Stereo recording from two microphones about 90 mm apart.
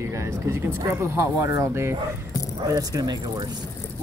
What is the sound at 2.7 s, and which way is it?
Speech, 40° right (ahead or behind).